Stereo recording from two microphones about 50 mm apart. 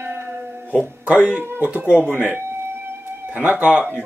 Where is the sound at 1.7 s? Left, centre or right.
Right.